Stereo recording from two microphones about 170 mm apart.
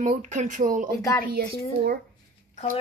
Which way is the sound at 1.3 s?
65° right (ahead or behind).